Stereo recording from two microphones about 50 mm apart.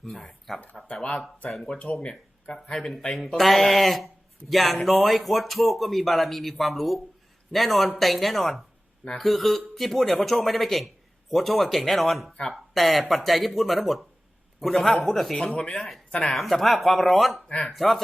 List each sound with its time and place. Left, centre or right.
0.0 s speech: centre
1.8 s speech: left; by 18.0 s centre